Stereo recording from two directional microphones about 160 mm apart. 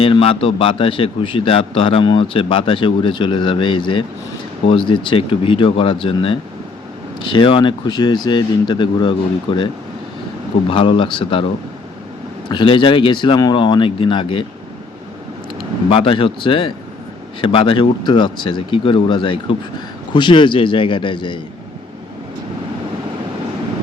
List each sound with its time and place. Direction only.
0.0 s a man's voice: 35° left (ahead or behind)
10.7 s a man's voice: 30° left (ahead or behind)
12.5 s a man's voice: 30° left (ahead or behind)
15.9 s a man's voice: 35° left (ahead or behind)